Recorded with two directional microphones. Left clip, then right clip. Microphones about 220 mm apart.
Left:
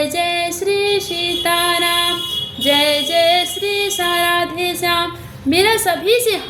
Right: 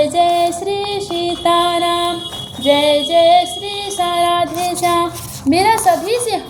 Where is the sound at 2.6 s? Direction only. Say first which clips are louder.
Right 2 dB; 25° left (ahead or behind).